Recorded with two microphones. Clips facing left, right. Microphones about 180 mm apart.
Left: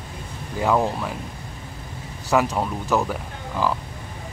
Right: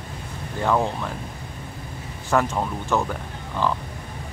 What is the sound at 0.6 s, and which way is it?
Speech, 5° left (ahead or behind).